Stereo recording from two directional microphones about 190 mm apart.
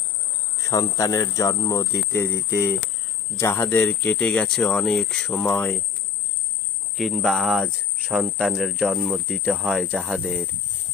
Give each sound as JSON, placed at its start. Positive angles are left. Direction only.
{"t": 0.6, "sound": "speech", "side_deg": 15}
{"t": 6.9, "sound": "speech", "side_deg": 0}